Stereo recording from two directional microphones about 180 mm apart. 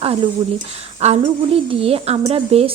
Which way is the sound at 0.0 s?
30° right (ahead or behind).